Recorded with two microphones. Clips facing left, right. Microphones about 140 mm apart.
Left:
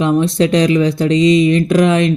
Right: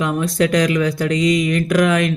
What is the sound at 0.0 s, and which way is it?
Speech, 25° left (ahead or behind).